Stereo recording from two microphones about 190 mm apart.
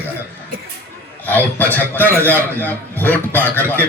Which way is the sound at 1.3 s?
10° left (ahead or behind).